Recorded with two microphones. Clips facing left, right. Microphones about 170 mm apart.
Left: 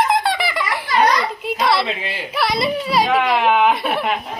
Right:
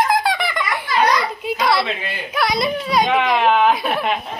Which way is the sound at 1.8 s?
30° left (ahead or behind).